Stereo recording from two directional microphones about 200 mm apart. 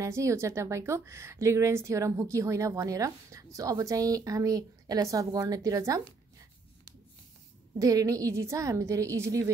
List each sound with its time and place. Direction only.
0.0 s a woman's voice: 15° right (ahead or behind)
7.8 s a woman's voice: 15° right (ahead or behind)